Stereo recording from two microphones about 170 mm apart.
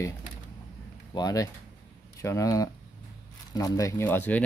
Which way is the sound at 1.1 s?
20° left (ahead or behind).